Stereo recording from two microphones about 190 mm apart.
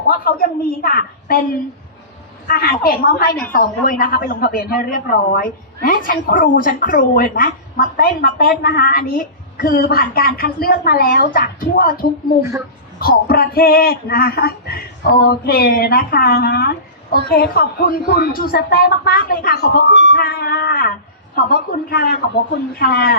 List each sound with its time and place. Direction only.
0.1 s a woman's voice: 50° left (ahead or behind)
2.5 s a woman's voice: 50° left (ahead or behind)
12.4 s speech: 15° right (ahead or behind)
13.0 s a woman's voice: 50° left (ahead or behind)
20.1 s music: 55° left (ahead or behind)
21.3 s a woman's voice: 55° left (ahead or behind)